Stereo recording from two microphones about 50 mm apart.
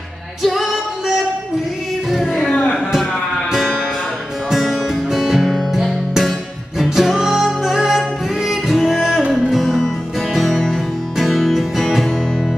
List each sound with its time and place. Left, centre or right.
0.4 s singing: centre
3.5 s music: centre
5.8 s music: centre